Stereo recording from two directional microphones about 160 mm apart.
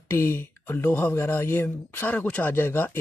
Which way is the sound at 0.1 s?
15° left (ahead or behind).